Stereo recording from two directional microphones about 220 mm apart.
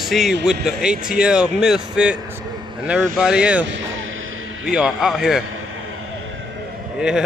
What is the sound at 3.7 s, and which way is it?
Speech, 60° right (ahead or behind).